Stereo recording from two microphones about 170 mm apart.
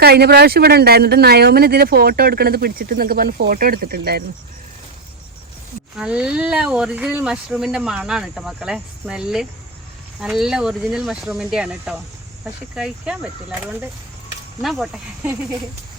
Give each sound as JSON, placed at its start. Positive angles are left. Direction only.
{"t": 0.0, "sound": "speech", "side_deg": -70}
{"t": 6.0, "sound": "speech", "side_deg": -5}
{"t": 14.6, "sound": "speech", "side_deg": 0}